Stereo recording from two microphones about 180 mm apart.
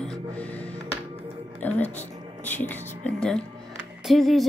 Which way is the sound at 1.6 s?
10° left (ahead or behind).